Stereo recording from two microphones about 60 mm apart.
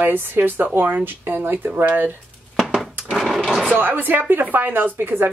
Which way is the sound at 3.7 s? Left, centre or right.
Right.